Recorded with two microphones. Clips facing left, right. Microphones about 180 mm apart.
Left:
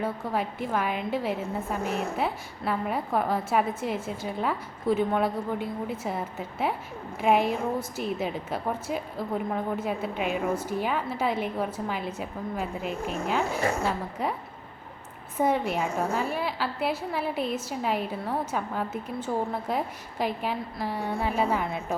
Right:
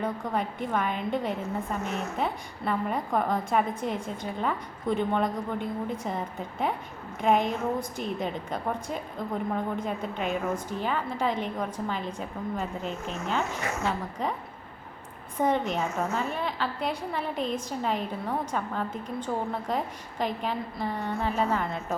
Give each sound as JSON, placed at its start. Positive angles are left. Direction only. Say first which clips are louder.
{"t": 0.0, "sound": "a woman's voice", "louder": "left 1 dB", "side_deg": 5}
{"t": 13.6, "sound": "a woman's voice", "louder": "left 5 dB", "side_deg": 30}
{"t": 13.8, "sound": "a woman's voice", "louder": "left 1 dB", "side_deg": 10}
{"t": 15.4, "sound": "a woman's voice", "louder": "left 1 dB", "side_deg": 10}